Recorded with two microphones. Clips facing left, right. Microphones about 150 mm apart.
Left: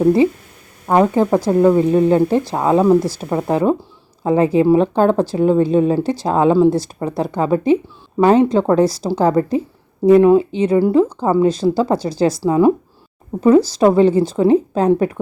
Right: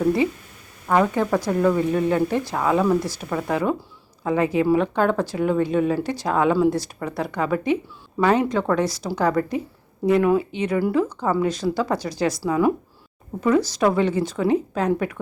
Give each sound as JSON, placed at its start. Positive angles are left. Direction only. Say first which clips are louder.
{"t": 0.0, "sound": "speech", "louder": "left 7 dB", "side_deg": 30}